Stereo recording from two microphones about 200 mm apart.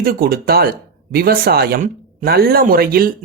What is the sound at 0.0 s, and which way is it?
Speech, 45° right (ahead or behind).